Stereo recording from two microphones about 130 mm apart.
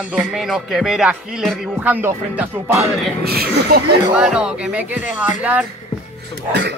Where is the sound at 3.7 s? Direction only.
90° right.